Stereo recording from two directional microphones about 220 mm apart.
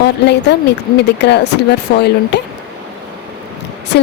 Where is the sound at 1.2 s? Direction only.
50° left (ahead or behind).